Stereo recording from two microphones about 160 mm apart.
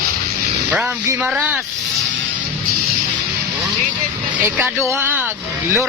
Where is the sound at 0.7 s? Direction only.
15° right (ahead or behind).